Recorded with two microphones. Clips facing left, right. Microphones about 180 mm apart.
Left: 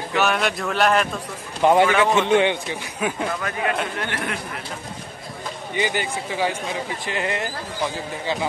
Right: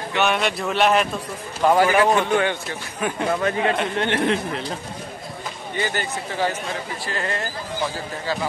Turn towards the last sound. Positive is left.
turn(degrees=15)  # may be behind; listen again after turning